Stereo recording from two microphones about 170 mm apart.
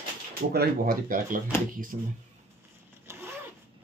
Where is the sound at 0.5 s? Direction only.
65° right (ahead or behind).